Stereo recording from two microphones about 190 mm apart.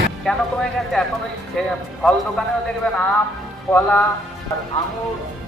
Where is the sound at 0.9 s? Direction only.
5° left (ahead or behind).